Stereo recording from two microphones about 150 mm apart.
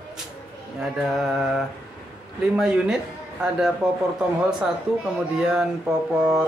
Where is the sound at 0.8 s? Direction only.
5° right (ahead or behind).